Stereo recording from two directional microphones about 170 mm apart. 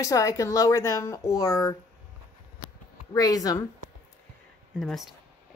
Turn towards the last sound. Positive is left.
turn(degrees=0)  # may be behind; listen again after turning